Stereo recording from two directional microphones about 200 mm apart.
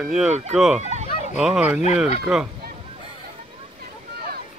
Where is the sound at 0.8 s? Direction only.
35° right (ahead or behind).